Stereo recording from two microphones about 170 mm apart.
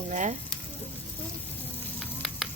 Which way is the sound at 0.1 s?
45° right (ahead or behind).